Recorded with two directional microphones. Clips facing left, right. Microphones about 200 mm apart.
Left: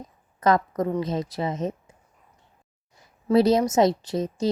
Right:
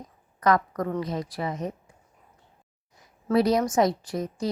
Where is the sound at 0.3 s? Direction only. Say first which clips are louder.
Left 2 dB; 25° left (ahead or behind).